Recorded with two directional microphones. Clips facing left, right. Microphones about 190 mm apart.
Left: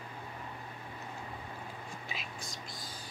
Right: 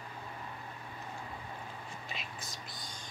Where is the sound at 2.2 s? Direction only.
Centre (ahead or behind).